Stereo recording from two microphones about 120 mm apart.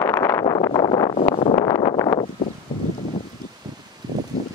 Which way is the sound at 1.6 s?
30° left (ahead or behind).